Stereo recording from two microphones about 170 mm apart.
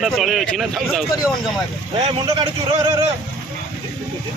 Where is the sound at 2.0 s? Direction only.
35° right (ahead or behind).